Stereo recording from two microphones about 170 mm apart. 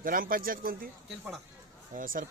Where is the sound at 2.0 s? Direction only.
55° right (ahead or behind).